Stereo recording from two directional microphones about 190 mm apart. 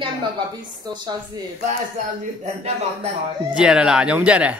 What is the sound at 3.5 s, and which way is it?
Speech, 5° right (ahead or behind).